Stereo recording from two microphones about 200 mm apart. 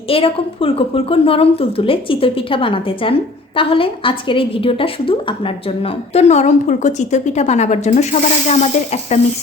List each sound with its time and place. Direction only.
0.1 s a woman's voice: 25° left (ahead or behind)